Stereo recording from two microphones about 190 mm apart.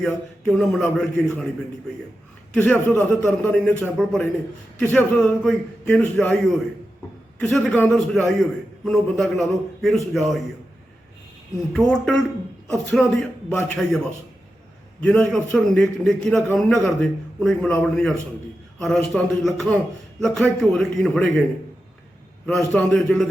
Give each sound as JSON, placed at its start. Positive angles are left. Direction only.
{"t": 0.0, "sound": "a man's voice", "side_deg": 5}
{"t": 2.6, "sound": "a man's voice", "side_deg": 10}
{"t": 7.3, "sound": "a man's voice", "side_deg": 5}
{"t": 11.7, "sound": "a man's voice", "side_deg": 5}
{"t": 15.0, "sound": "a man's voice", "side_deg": 5}
{"t": 22.4, "sound": "a man's voice", "side_deg": 0}